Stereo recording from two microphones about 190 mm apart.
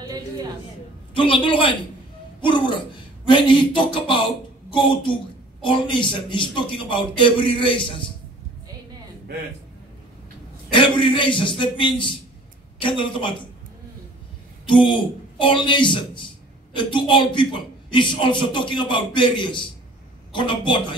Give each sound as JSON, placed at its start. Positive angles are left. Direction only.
{"t": 0.0, "sound": "a sound", "side_deg": -20}
{"t": 1.1, "sound": "a man's voice", "side_deg": 25}
{"t": 10.7, "sound": "a man's voice", "side_deg": 25}
{"t": 14.7, "sound": "a man's voice", "side_deg": 25}